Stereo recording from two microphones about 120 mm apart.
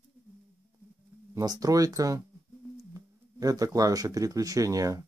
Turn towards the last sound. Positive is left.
turn(degrees=-30)  # may be behind; listen again after turning